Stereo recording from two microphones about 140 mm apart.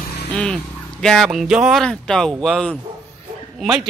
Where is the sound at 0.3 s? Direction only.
10° left (ahead or behind).